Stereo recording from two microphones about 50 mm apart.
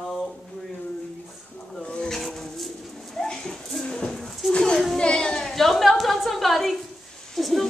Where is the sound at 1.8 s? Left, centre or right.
Centre.